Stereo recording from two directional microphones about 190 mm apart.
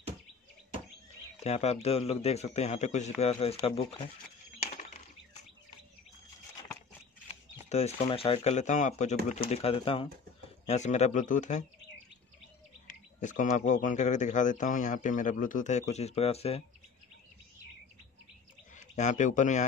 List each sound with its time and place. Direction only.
1.4 s speech: 35° left (ahead or behind)
4.6 s a sound: 40° left (ahead or behind)
7.7 s speech: 35° left (ahead or behind)
13.2 s speech: 40° left (ahead or behind)
18.8 s speech: 40° left (ahead or behind)